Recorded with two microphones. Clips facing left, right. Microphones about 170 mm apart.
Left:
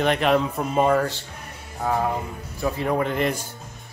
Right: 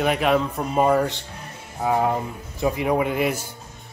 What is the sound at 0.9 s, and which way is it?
Speech, 15° right (ahead or behind).